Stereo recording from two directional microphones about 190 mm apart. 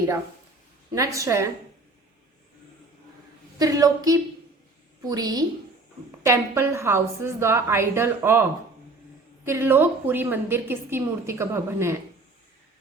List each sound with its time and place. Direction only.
0.9 s a woman's voice: 15° right (ahead or behind)
3.6 s a woman's voice: 20° right (ahead or behind)